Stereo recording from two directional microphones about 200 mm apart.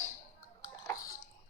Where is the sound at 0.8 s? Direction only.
15° left (ahead or behind).